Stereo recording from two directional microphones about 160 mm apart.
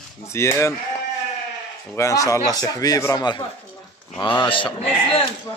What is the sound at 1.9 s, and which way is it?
A man's voice, 20° left (ahead or behind).